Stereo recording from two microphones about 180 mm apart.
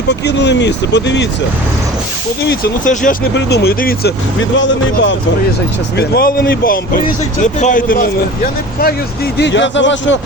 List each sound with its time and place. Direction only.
0.1 s speech: 70° left (ahead or behind)
2.8 s speech: 45° left (ahead or behind)
3.3 s speech: 65° left (ahead or behind)
4.5 s speech: 90° left
6.0 s speech: 55° left (ahead or behind)
9.4 s speech: 80° left